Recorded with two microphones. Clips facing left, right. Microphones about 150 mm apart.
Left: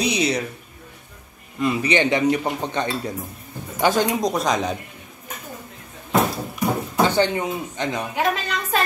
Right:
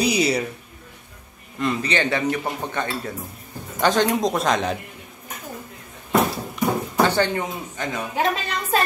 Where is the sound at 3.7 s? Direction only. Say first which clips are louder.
Even; 10° left (ahead or behind).